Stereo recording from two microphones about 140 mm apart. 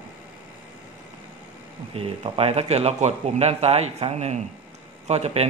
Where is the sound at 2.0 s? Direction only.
45° right (ahead or behind).